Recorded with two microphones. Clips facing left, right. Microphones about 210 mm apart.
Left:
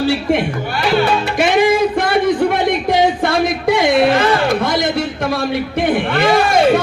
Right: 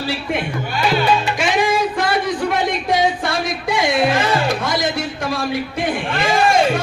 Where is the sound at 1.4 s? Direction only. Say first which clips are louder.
Left 5 dB; 55° left (ahead or behind).